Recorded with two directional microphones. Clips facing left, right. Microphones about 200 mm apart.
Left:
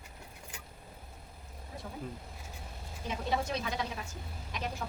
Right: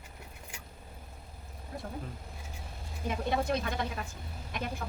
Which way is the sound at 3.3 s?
55° right (ahead or behind).